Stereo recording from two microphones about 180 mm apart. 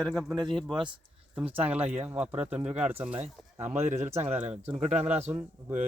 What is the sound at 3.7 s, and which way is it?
Speech, 40° right (ahead or behind).